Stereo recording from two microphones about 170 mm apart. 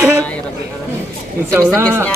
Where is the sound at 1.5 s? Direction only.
15° right (ahead or behind).